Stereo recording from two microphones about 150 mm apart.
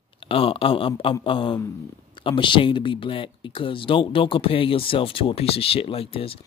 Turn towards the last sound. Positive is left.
turn(degrees=40)  # may be behind; listen again after turning